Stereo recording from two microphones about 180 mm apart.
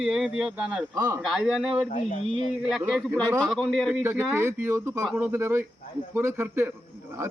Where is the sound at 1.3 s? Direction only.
5° right (ahead or behind).